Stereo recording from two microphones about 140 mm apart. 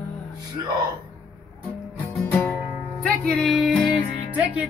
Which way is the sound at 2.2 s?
15° left (ahead or behind).